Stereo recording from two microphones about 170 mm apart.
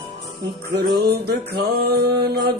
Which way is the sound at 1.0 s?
70° right (ahead or behind).